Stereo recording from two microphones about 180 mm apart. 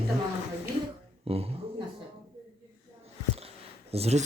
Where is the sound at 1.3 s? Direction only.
35° right (ahead or behind).